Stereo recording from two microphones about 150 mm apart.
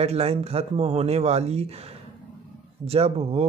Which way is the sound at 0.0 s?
45° right (ahead or behind).